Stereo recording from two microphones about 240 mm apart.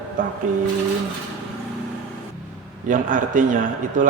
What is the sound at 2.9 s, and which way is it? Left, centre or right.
Speech, right.